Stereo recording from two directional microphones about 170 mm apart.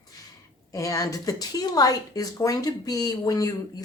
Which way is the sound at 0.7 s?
20° left (ahead or behind).